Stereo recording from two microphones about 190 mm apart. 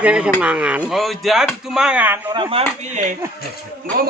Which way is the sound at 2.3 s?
25° right (ahead or behind).